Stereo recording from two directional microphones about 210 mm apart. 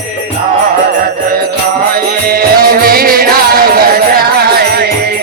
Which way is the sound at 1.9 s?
45° right (ahead or behind).